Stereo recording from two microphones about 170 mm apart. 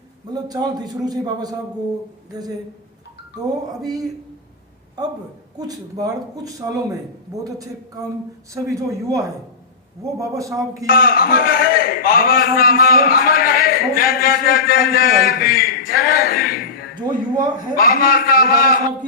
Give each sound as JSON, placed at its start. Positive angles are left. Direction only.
{"t": 0.3, "sound": "speech", "side_deg": -25}
{"t": 3.4, "sound": "speech", "side_deg": -20}
{"t": 5.5, "sound": "speech", "side_deg": -20}
{"t": 8.5, "sound": "speech", "side_deg": -20}
{"t": 10.8, "sound": "a man's voice", "side_deg": 60}
{"t": 17.3, "sound": "speech", "side_deg": -25}
{"t": 17.7, "sound": "a man's voice", "side_deg": 60}